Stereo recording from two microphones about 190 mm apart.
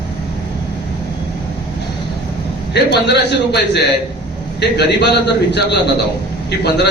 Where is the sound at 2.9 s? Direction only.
60° left (ahead or behind).